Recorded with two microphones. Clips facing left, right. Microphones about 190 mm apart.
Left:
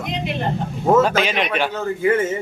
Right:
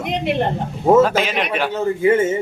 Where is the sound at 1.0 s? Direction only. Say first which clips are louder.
Right 1 dB; centre (ahead or behind).